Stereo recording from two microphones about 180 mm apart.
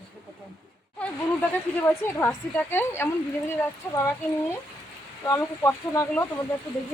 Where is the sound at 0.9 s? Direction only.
5° left (ahead or behind).